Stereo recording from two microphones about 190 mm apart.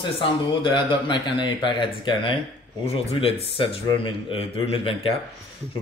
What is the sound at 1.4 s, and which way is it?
Speech, 25° left (ahead or behind).